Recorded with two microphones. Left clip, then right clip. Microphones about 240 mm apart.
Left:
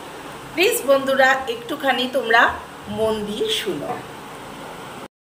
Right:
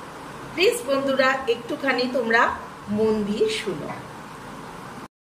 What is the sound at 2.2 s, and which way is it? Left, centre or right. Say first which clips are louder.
Speech: left 5 dB; centre.